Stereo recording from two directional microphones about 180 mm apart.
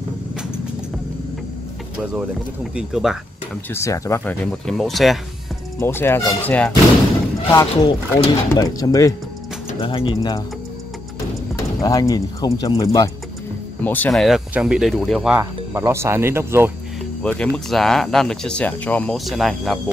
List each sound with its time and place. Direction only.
2.7 s speech: 5° right (ahead or behind)
3.7 s speech: 15° left (ahead or behind)
4.6 s speech: centre (ahead or behind)
5.8 s speech: 15° left (ahead or behind)
7.5 s speech: 25° left (ahead or behind)
11.5 s speech: 20° left (ahead or behind)
13.8 s speech: 10° left (ahead or behind)
15.3 s speech: 15° right (ahead or behind)
17.2 s speech: 5° left (ahead or behind)